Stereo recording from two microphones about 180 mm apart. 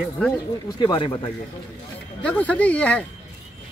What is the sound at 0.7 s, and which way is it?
Speech, 25° left (ahead or behind).